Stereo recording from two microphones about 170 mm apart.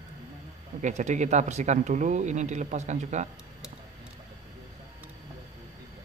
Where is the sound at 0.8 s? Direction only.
45° right (ahead or behind).